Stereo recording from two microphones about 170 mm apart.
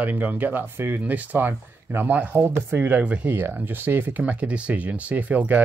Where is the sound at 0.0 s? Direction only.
10° right (ahead or behind).